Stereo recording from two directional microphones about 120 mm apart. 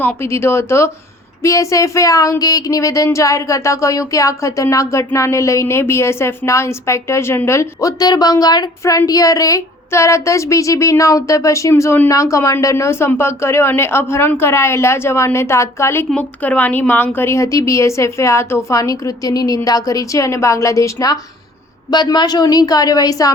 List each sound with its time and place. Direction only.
0.0 s speech: 20° left (ahead or behind)
16.0 s a woman's voice: 10° left (ahead or behind); by 23.3 s 30° left (ahead or behind)